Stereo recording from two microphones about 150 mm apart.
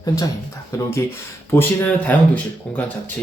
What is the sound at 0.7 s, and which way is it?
Speech, 20° left (ahead or behind).